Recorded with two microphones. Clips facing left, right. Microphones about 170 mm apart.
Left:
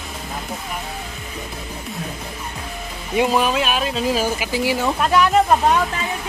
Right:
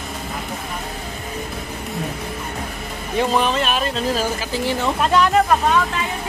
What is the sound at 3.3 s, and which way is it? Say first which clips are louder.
Speech: even; 5° left (ahead or behind).